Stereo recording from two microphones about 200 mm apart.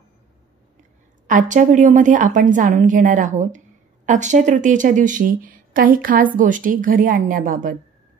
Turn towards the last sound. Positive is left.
turn(degrees=-40)  # may be behind; listen again after turning